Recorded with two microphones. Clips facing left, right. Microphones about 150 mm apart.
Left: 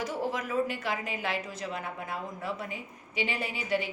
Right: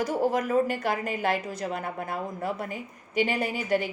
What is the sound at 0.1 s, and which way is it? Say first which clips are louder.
A woman's voice: right 7 dB; 45° right (ahead or behind).